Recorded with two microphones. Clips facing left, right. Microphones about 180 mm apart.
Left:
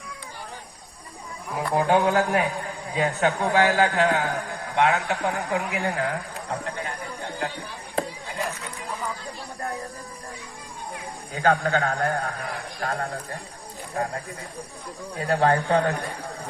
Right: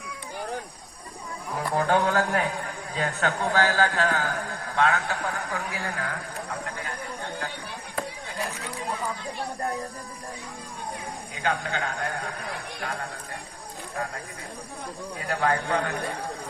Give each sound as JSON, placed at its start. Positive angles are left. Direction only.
{"t": 1.5, "sound": "a man's voice", "side_deg": 15}
{"t": 6.5, "sound": "a sound", "side_deg": 25}
{"t": 11.4, "sound": "speech", "side_deg": 40}
{"t": 15.3, "sound": "speech", "side_deg": 35}